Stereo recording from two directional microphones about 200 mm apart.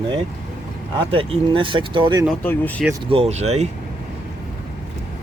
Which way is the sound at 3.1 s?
30° right (ahead or behind).